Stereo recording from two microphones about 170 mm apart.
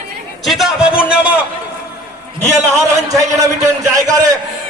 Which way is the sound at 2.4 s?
15° right (ahead or behind).